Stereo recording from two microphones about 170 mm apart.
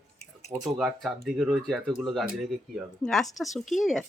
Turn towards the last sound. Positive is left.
turn(degrees=0)  # may be behind; listen again after turning